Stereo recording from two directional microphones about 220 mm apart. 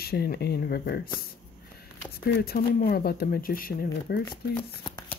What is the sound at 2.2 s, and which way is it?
Speech, 45° left (ahead or behind).